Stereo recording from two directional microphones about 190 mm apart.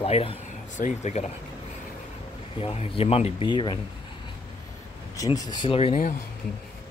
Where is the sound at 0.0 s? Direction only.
30° left (ahead or behind).